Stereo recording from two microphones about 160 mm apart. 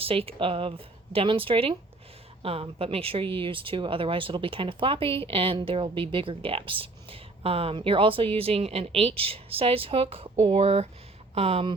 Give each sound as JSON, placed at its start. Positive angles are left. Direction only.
{"t": 0.0, "sound": "speech", "side_deg": -35}